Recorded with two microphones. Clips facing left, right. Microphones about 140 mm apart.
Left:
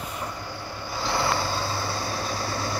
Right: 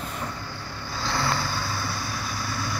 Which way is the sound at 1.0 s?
20° left (ahead or behind).